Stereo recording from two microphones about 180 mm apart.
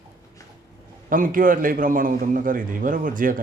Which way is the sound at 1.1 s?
50° right (ahead or behind).